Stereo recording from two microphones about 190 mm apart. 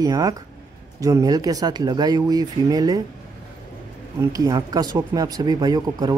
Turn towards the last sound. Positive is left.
turn(degrees=-20)  # may be behind; listen again after turning